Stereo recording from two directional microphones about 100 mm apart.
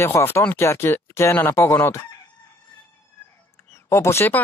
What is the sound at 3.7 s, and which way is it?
Speech, 25° left (ahead or behind).